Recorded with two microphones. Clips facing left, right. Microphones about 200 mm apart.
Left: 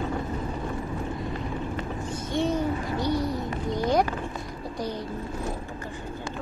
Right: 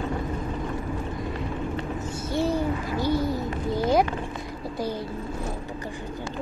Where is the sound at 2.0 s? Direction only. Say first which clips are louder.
Even; 5° right (ahead or behind).